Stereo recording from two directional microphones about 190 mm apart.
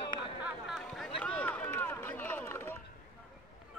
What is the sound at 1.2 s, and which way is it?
Run, 5° left (ahead or behind).